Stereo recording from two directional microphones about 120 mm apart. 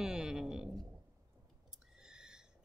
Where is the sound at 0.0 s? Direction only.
5° right (ahead or behind).